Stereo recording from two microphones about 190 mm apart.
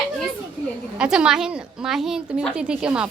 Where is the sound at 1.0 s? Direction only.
5° right (ahead or behind).